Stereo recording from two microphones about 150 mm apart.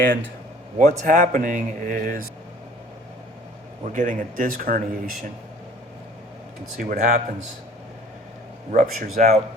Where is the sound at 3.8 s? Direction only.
60° right (ahead or behind).